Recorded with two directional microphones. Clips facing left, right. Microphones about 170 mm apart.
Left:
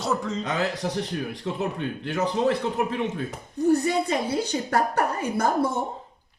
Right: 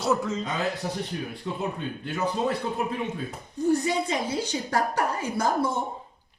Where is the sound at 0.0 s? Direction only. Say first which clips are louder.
Right 1 dB; centre (ahead or behind).